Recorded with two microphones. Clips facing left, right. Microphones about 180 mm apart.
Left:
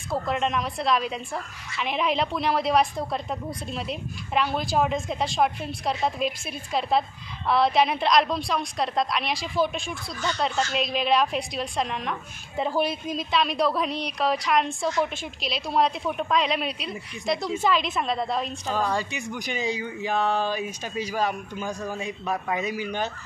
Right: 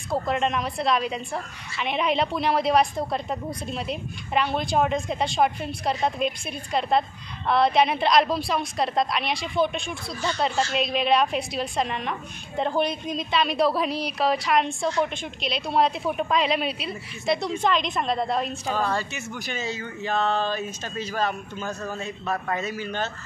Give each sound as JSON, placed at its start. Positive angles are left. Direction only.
{"t": 0.1, "sound": "a woman's voice", "side_deg": 0}
{"t": 18.8, "sound": "speech", "side_deg": 15}